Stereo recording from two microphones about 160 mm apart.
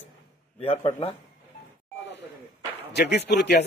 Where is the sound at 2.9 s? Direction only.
90° left.